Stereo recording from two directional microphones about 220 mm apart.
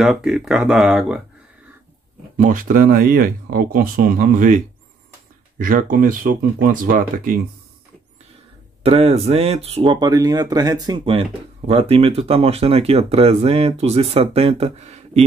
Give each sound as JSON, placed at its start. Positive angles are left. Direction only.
{"t": 0.0, "sound": "speech", "side_deg": 0}
{"t": 2.3, "sound": "speech", "side_deg": -35}
{"t": 8.8, "sound": "speech", "side_deg": -25}